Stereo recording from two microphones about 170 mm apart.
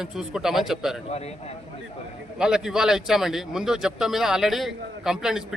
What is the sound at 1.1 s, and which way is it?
Speech, 35° left (ahead or behind).